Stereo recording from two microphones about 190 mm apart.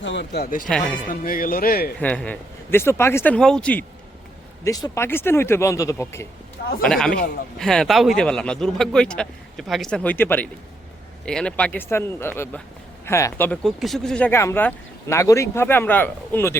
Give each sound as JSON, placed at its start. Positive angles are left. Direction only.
{"t": 0.0, "sound": "speech", "side_deg": 70}
{"t": 0.7, "sound": "speech", "side_deg": 5}
{"t": 1.0, "sound": "speech", "side_deg": 45}
{"t": 2.0, "sound": "speech", "side_deg": 5}
{"t": 4.6, "sound": "speech", "side_deg": 15}